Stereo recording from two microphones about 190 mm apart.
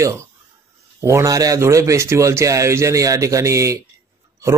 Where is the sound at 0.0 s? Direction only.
15° right (ahead or behind).